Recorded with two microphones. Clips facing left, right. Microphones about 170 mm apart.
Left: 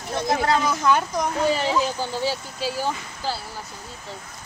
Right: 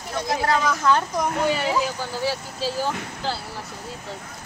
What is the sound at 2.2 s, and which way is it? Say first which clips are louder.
Speech: right 4 dB; 15° left (ahead or behind).